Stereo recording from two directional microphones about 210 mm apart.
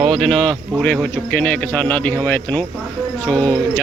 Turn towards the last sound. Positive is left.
turn(degrees=5)  # may be behind; listen again after turning